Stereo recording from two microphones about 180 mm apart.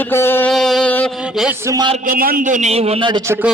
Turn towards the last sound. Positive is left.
turn(degrees=-30)  # may be behind; listen again after turning